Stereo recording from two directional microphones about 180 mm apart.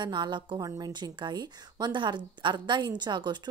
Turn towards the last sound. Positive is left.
turn(degrees=-25)  # may be behind; listen again after turning